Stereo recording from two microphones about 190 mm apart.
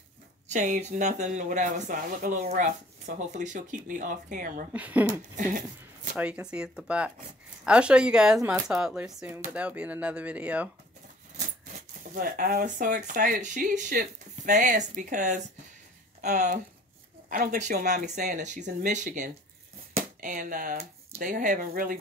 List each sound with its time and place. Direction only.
0.5 s speech: 40° right (ahead or behind)
4.7 s speech: 10° right (ahead or behind)
5.3 s speech: 40° right (ahead or behind)
6.1 s speech: 5° right (ahead or behind)
11.3 s speech: 45° right (ahead or behind)